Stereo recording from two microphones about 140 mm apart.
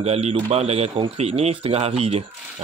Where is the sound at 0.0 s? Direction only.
45° right (ahead or behind).